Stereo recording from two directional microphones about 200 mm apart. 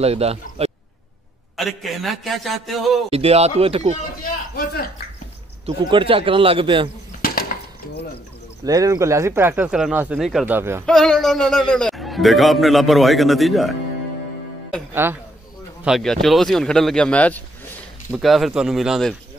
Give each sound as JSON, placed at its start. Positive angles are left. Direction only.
{"t": 0.0, "sound": "speech", "side_deg": -30}
{"t": 1.6, "sound": "a man's voice", "side_deg": 0}
{"t": 3.1, "sound": "a man's voice", "side_deg": -30}
{"t": 4.2, "sound": "a sound", "side_deg": 50}
{"t": 5.7, "sound": "a man's voice", "side_deg": -25}
{"t": 7.2, "sound": "a sound", "side_deg": 50}
{"t": 8.6, "sound": "speech", "side_deg": -15}
{"t": 10.9, "sound": "a man's voice", "side_deg": 0}
{"t": 15.0, "sound": "speech", "side_deg": -10}
{"t": 15.8, "sound": "a man's voice", "side_deg": 0}